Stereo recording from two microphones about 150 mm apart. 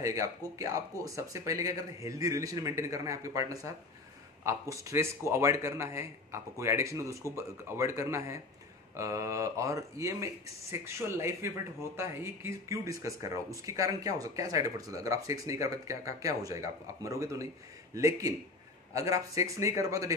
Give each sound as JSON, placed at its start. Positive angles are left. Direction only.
{"t": 0.0, "sound": "speech", "side_deg": -20}